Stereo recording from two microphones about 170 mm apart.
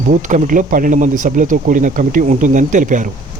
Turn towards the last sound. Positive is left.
turn(degrees=-50)  # may be behind; listen again after turning